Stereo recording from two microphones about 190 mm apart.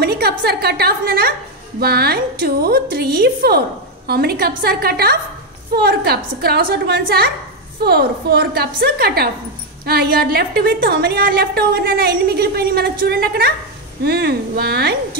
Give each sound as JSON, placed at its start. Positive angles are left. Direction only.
{"t": 0.0, "sound": "a woman's voice", "side_deg": -55}